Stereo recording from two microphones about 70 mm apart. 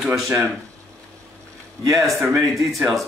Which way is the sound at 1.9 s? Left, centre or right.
Right.